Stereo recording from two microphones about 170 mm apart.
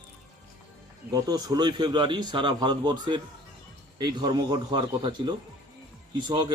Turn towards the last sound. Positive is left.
turn(degrees=-25)  # may be behind; listen again after turning